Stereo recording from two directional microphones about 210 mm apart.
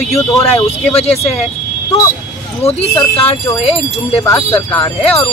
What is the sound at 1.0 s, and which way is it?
Speech, 30° left (ahead or behind).